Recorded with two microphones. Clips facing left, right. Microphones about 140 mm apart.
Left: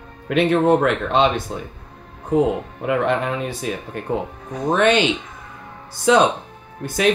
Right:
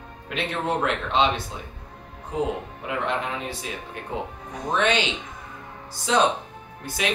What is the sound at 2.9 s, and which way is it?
Speech, 55° left (ahead or behind).